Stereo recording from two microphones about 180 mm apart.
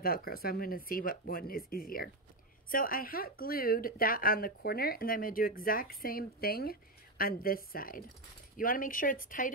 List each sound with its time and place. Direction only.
0.0 s speech: 55° left (ahead or behind)